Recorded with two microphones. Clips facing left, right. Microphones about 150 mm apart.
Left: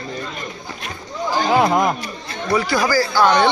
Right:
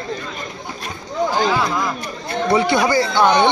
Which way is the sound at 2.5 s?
25° right (ahead or behind).